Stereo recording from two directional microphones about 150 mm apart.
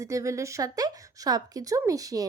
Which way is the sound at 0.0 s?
20° right (ahead or behind).